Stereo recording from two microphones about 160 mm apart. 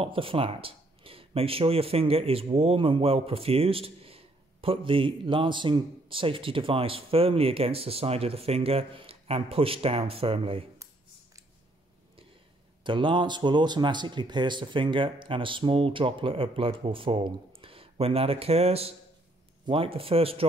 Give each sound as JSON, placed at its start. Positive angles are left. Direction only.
{"t": 0.0, "sound": "speech", "side_deg": -35}
{"t": 12.8, "sound": "speech", "side_deg": -30}